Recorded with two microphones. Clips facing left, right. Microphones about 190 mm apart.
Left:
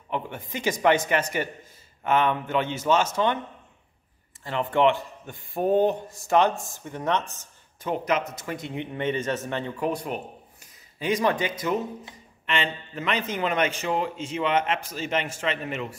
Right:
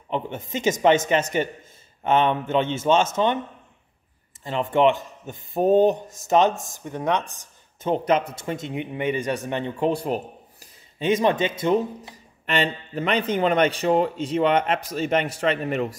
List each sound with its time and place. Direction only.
0.1 s a man's voice: 25° right (ahead or behind)
4.4 s speech: 20° right (ahead or behind)
7.8 s a man's voice: 30° right (ahead or behind)
12.1 s a man's voice: 40° right (ahead or behind)